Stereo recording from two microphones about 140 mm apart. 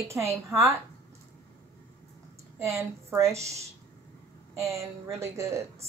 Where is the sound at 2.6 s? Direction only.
20° right (ahead or behind).